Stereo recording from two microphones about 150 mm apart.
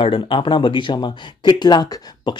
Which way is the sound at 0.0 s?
35° left (ahead or behind).